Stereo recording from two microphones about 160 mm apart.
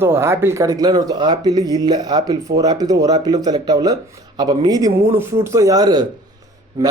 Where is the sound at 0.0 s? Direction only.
15° right (ahead or behind).